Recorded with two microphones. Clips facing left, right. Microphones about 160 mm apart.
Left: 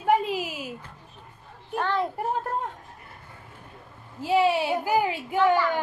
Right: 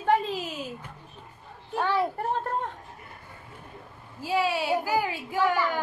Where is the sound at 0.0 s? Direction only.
10° left (ahead or behind).